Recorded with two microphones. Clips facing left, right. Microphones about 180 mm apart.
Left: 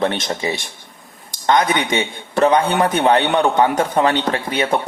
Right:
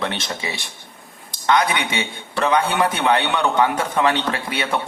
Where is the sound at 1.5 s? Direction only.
40° left (ahead or behind).